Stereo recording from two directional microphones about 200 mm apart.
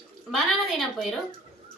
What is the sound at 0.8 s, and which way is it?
Speech, centre (ahead or behind).